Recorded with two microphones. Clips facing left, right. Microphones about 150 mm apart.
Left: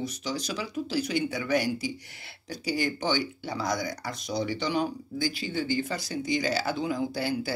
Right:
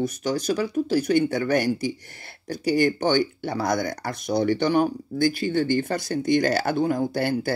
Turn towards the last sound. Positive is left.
turn(degrees=-55)  # may be behind; listen again after turning